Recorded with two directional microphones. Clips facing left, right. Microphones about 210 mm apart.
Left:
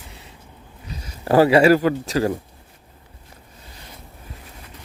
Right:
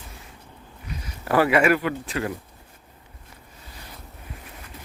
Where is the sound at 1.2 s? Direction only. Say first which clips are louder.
Left 6 dB; 30° left (ahead or behind).